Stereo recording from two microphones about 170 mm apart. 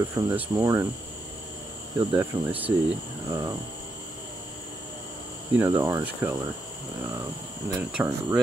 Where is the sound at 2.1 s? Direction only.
10° right (ahead or behind).